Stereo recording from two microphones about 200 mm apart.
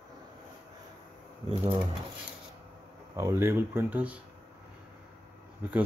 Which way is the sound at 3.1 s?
15° right (ahead or behind).